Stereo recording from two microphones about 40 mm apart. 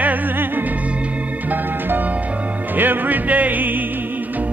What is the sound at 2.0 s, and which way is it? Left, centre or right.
Music, right.